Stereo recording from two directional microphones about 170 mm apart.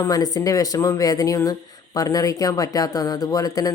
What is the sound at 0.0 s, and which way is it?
Speech, 20° left (ahead or behind).